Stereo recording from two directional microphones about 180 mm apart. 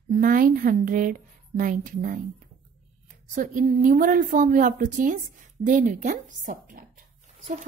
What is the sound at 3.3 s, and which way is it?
Speech, 45° right (ahead or behind).